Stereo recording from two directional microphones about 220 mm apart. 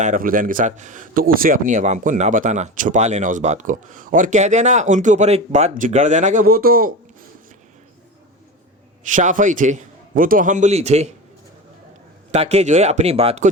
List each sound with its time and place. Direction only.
0.0 s a man's voice: 40° right (ahead or behind)
9.0 s a man's voice: 35° right (ahead or behind)
12.3 s speech: 30° right (ahead or behind)